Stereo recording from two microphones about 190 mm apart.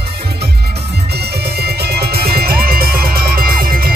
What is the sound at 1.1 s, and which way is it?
Music, 55° right (ahead or behind).